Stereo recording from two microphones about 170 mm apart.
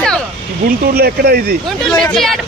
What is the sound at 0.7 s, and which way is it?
Speech, 65° right (ahead or behind).